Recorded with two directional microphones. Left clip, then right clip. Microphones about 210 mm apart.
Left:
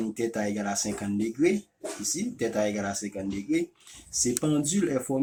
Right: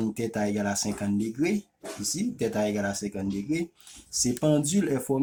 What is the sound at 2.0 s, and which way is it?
Speech, 55° right (ahead or behind).